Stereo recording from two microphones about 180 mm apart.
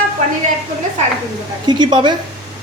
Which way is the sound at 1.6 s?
25° right (ahead or behind).